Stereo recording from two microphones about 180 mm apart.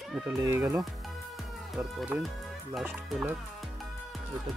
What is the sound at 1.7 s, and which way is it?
Speech, centre (ahead or behind).